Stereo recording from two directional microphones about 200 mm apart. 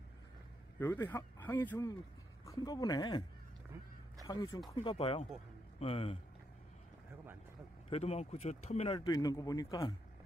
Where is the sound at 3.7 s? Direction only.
15° right (ahead or behind).